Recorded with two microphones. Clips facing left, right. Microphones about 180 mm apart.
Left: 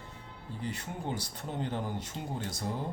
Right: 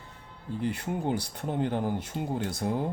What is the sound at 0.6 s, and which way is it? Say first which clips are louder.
Speech: right 7 dB; 60° right (ahead or behind).